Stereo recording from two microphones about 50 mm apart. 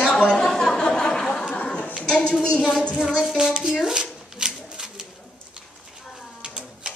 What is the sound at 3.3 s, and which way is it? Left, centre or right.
Speech, centre.